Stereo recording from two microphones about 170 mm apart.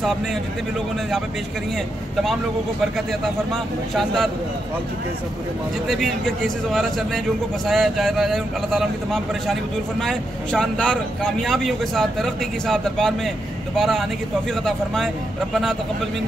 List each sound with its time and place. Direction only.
2.8 s speech: centre (ahead or behind)
5.9 s speech: centre (ahead or behind)